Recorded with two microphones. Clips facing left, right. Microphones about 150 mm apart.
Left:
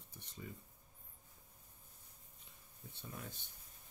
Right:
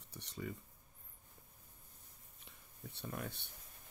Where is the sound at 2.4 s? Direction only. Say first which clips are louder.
Right 5 dB; 70° right (ahead or behind).